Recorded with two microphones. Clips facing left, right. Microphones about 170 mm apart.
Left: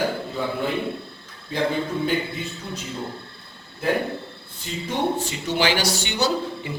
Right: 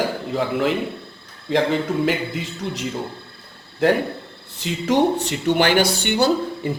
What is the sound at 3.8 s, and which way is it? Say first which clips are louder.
A man's voice: right 5 dB; 85° right.